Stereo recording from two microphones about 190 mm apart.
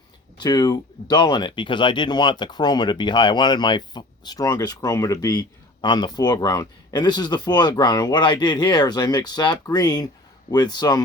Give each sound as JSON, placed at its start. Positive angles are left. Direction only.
{"t": 0.3, "sound": "speech", "side_deg": 20}